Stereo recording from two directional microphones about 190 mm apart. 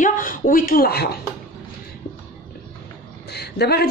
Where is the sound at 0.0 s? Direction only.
45° left (ahead or behind).